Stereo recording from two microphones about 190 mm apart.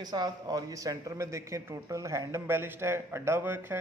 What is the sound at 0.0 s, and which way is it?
Speech, 20° right (ahead or behind).